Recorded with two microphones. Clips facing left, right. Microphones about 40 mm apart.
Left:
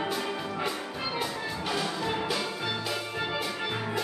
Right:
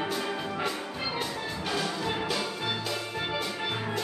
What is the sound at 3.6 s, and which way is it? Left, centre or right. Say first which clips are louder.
Music: even; centre.